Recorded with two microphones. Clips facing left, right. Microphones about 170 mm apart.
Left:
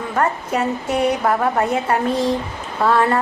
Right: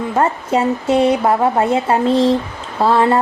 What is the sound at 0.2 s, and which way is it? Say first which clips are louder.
A woman's voice: right 3 dB; 25° right (ahead or behind).